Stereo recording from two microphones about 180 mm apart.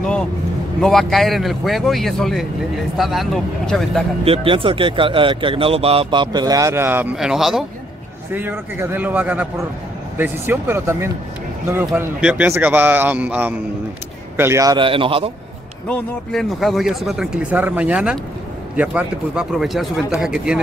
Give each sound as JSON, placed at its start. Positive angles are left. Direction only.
{"t": 0.0, "sound": "speech", "side_deg": 5}
{"t": 4.2, "sound": "a man's voice", "side_deg": -30}
{"t": 15.9, "sound": "speech", "side_deg": 0}